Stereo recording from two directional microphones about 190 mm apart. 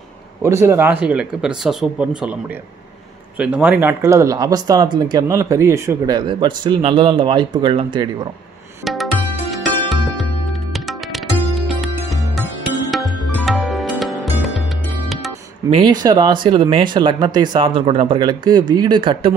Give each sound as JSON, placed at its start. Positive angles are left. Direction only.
{"t": 0.4, "sound": "speech", "side_deg": -15}
{"t": 3.3, "sound": "speech", "side_deg": -5}
{"t": 8.8, "sound": "music", "side_deg": 0}
{"t": 15.7, "sound": "speech", "side_deg": -25}